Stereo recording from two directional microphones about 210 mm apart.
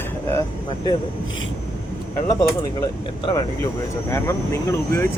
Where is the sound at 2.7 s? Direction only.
15° left (ahead or behind).